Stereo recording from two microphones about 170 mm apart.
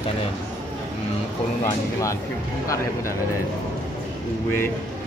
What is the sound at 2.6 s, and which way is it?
Speech, 15° left (ahead or behind).